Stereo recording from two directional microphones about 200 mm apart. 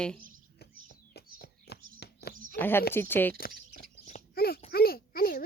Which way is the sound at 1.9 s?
55° left (ahead or behind).